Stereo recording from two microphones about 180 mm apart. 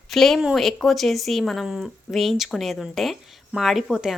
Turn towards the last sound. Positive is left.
turn(degrees=0)  # may be behind; listen again after turning